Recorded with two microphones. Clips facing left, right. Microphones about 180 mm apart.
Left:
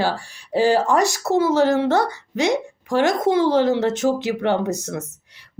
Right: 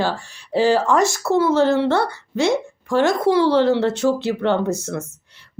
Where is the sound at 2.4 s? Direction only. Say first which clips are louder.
Right 1 dB; 15° left (ahead or behind).